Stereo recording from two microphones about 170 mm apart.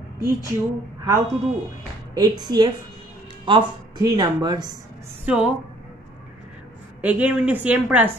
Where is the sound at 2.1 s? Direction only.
25° right (ahead or behind).